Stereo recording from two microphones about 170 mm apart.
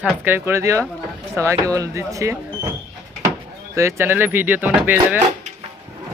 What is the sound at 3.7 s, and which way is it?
Speech, 15° right (ahead or behind).